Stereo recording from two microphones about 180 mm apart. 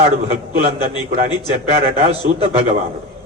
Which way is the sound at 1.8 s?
35° right (ahead or behind).